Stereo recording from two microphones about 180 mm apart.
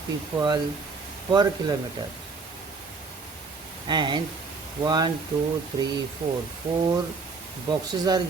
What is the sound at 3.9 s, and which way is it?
Speech, 25° right (ahead or behind).